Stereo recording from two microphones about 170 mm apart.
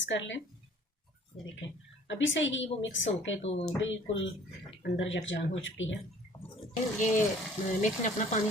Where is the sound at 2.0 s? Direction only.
90° left.